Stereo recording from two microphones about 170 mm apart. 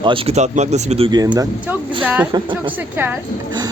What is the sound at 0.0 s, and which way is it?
Speech, 30° right (ahead or behind).